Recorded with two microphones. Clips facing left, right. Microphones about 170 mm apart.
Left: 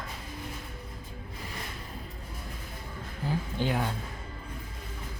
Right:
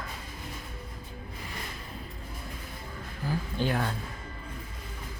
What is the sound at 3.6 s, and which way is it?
Speech, 15° left (ahead or behind).